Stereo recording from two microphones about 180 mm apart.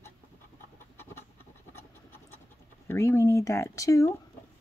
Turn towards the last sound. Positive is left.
turn(degrees=15)  # may be behind; listen again after turning